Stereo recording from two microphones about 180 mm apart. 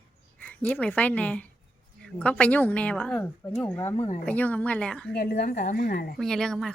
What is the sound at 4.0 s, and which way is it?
Speech, 40° left (ahead or behind).